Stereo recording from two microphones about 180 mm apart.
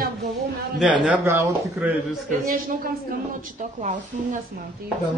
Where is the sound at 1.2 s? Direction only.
15° right (ahead or behind).